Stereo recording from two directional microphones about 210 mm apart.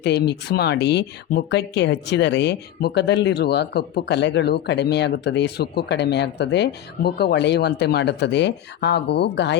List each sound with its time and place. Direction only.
0.0 s speech: 55° left (ahead or behind)